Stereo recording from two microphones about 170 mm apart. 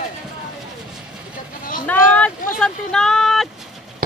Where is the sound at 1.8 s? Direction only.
10° left (ahead or behind).